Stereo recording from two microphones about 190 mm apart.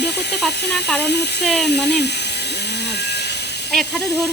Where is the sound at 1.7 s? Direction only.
60° left (ahead or behind).